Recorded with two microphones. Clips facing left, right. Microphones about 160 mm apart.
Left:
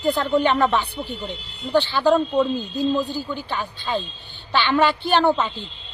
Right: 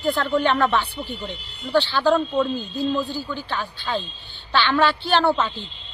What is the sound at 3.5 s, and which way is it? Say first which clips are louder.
Speech: left 1 dB; centre (ahead or behind).